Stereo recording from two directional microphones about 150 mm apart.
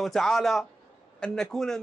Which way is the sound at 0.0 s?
Centre (ahead or behind).